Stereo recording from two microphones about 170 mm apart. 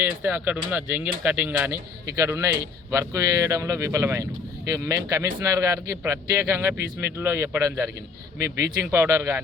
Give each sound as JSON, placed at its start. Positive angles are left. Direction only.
{"t": 0.0, "sound": "speech", "side_deg": -10}